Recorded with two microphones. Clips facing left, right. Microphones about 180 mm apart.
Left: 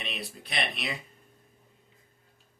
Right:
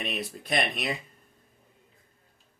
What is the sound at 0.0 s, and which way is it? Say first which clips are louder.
Speech: right 5 dB; 45° right (ahead or behind).